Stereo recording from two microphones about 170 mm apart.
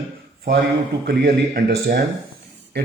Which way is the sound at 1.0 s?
65° right (ahead or behind).